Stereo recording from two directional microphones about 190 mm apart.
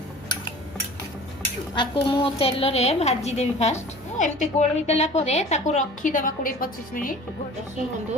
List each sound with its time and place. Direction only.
1.7 s a woman's voice: 25° left (ahead or behind); by 7.2 s 45° left (ahead or behind)